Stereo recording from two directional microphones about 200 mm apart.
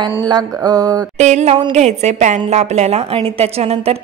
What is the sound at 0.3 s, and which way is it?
Mantra, 20° right (ahead or behind).